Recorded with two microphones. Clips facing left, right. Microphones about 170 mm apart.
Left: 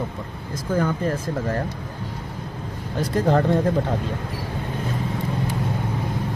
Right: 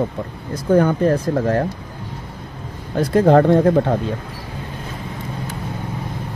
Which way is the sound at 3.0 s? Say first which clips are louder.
Right 7 dB; 60° right (ahead or behind).